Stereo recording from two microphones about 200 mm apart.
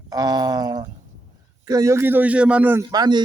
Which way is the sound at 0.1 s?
20° right (ahead or behind).